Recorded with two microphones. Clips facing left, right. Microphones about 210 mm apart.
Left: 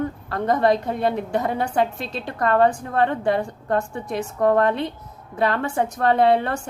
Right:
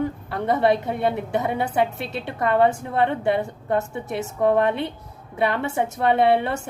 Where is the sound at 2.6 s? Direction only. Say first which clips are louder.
Left 1 dB; 20° right (ahead or behind).